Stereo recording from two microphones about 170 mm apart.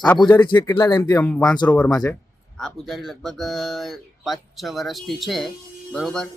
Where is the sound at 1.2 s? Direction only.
5° left (ahead or behind).